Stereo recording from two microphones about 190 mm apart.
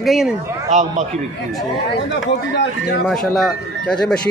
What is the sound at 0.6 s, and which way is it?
Speech, 40° right (ahead or behind).